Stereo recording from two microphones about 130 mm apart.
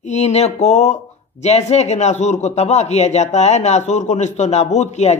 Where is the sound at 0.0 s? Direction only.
60° left (ahead or behind).